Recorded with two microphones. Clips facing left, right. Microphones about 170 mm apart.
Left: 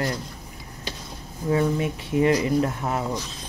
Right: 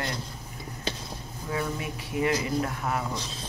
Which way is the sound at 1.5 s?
25° left (ahead or behind).